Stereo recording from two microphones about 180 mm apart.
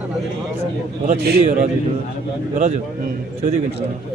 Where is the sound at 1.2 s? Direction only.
60° right (ahead or behind).